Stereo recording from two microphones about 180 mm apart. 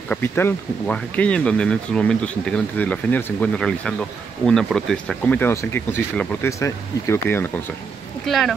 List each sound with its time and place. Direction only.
0.1 s speech: 10° left (ahead or behind)
8.3 s speech: centre (ahead or behind)